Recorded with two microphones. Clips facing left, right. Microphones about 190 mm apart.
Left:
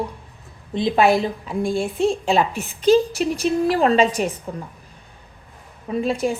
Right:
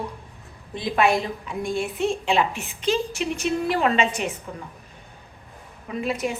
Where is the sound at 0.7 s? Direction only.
30° left (ahead or behind).